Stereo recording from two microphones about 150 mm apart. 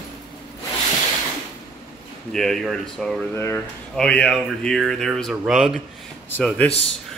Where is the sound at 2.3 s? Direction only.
5° left (ahead or behind).